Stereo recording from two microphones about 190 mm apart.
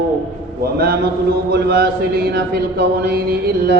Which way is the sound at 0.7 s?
55° right (ahead or behind).